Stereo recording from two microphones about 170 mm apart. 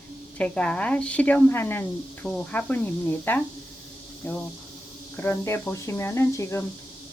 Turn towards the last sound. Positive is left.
turn(degrees=15)  # may be behind; listen again after turning